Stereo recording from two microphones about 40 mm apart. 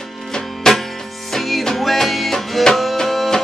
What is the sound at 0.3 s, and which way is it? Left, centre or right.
Music, centre.